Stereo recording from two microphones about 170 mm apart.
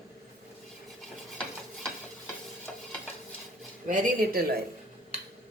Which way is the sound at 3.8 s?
55° right (ahead or behind).